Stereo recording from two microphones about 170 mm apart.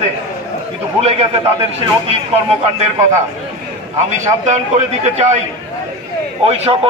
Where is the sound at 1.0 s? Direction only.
35° right (ahead or behind).